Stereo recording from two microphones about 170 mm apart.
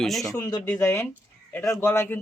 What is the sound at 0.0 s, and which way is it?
Speech, centre (ahead or behind).